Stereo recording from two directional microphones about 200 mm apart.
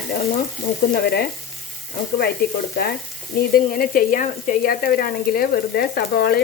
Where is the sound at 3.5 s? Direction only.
45° left (ahead or behind).